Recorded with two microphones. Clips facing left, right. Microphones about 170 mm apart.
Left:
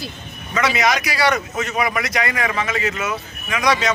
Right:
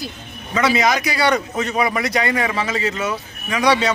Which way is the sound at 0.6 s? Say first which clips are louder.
Right 2 dB; 30° right (ahead or behind).